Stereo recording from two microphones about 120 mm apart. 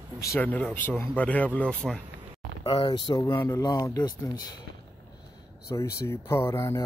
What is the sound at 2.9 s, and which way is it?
Speech, 35° left (ahead or behind).